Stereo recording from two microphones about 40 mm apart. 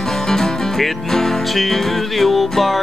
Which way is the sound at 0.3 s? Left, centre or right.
Centre.